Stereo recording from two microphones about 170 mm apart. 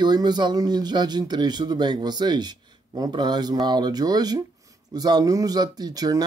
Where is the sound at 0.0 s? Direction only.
25° right (ahead or behind).